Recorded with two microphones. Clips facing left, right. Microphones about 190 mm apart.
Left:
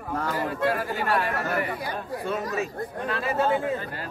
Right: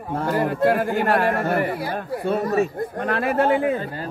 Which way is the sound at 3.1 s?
60° right (ahead or behind).